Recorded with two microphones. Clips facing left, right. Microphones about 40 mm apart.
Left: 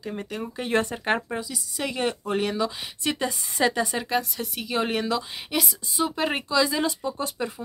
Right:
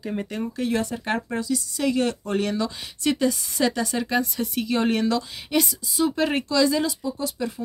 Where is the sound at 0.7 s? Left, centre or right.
Left.